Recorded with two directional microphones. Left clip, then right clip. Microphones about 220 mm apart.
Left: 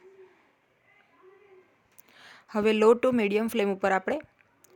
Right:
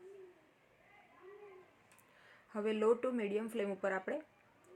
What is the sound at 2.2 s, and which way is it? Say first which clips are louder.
Speech: left 13 dB; 45° left (ahead or behind).